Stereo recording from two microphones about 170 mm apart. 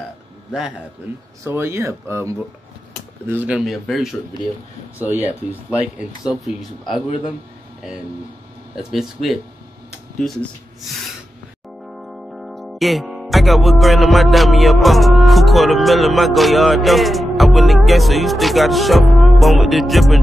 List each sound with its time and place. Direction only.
0.5 s speech: 5° right (ahead or behind)
1.4 s speech: 15° right (ahead or behind)
8.7 s speech: centre (ahead or behind)
12.1 s music: centre (ahead or behind)